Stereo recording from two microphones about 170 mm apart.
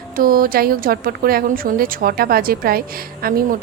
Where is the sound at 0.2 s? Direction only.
55° right (ahead or behind).